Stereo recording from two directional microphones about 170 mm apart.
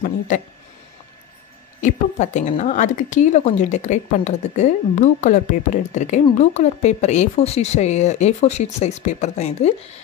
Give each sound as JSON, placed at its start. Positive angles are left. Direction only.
{"t": 1.8, "sound": "speech", "side_deg": 45}